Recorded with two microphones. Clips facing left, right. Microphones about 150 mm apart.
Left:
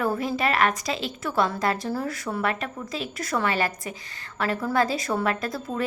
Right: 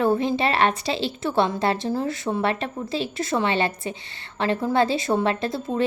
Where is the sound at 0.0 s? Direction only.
25° right (ahead or behind).